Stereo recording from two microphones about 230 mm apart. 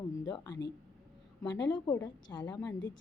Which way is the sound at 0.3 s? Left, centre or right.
Centre.